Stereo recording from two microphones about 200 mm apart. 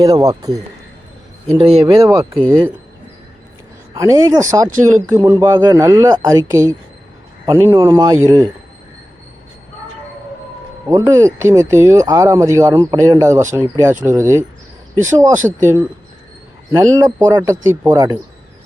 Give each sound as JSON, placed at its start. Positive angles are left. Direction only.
{"t": 0.0, "sound": "speech", "side_deg": -15}
{"t": 1.5, "sound": "speech", "side_deg": -30}
{"t": 1.9, "sound": "speech", "side_deg": -15}
{"t": 3.9, "sound": "speech", "side_deg": -15}
{"t": 10.8, "sound": "speech", "side_deg": -15}